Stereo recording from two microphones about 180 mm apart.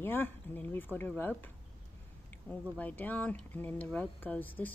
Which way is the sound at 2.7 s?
10° left (ahead or behind).